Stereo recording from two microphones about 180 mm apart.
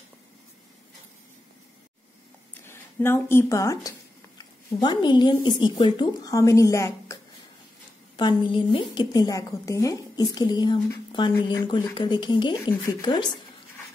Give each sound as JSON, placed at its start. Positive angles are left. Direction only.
{"t": 2.6, "sound": "a woman's voice", "side_deg": 15}
{"t": 8.2, "sound": "a woman's voice", "side_deg": 25}